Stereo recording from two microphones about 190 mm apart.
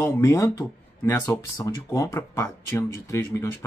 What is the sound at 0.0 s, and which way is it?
Speech, 15° left (ahead or behind).